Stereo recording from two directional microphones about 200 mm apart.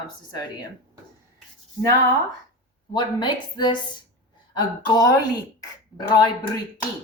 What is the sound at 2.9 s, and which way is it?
Speech, 20° left (ahead or behind).